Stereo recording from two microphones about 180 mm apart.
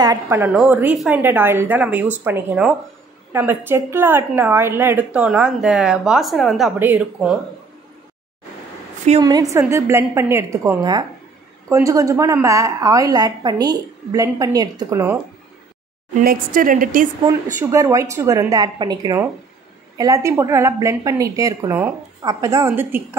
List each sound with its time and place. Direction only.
0.0 s a woman's voice: 15° right (ahead or behind)
9.2 s a woman's voice: 20° right (ahead or behind)
16.3 s a woman's voice: 50° right (ahead or behind)
17.6 s a woman's voice: 15° right (ahead or behind)